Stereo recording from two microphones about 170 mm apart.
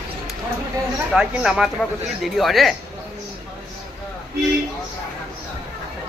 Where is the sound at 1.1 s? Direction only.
5° right (ahead or behind).